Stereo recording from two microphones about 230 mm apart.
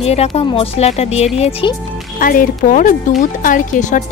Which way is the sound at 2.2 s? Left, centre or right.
Left.